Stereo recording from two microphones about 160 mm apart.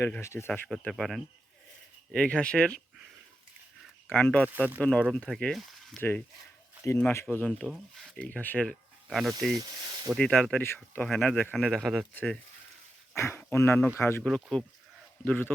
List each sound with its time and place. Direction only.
0.0 s speech: 15° left (ahead or behind)
0.7 s speech: 5° left (ahead or behind)
4.1 s speech: 10° left (ahead or behind)
4.4 s speech: 10° right (ahead or behind)
4.8 s speech: 10° left (ahead or behind)
6.0 s speech: 10° left (ahead or behind)
7.7 s speech: centre (ahead or behind)
9.6 s speech: 25° right (ahead or behind)
10.1 s speech: 5° left (ahead or behind)
11.5 s speech: centre (ahead or behind)
13.1 s speech: 15° left (ahead or behind)
14.3 s speech: centre (ahead or behind)
15.2 s speech: 10° left (ahead or behind)